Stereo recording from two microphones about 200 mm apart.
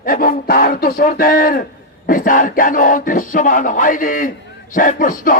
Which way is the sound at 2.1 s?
45° left (ahead or behind).